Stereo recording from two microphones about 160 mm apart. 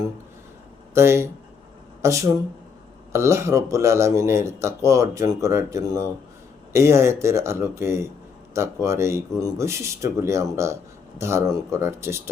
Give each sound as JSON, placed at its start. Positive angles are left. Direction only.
{"t": 0.9, "sound": "speech", "side_deg": -15}